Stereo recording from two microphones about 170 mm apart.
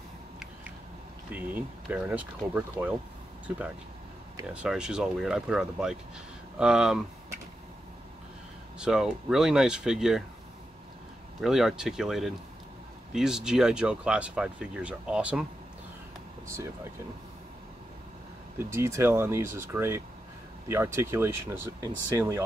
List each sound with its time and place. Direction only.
1.3 s speech: 10° right (ahead or behind)
8.7 s speech: 5° right (ahead or behind)
11.4 s speech: centre (ahead or behind)
18.6 s speech: 15° right (ahead or behind)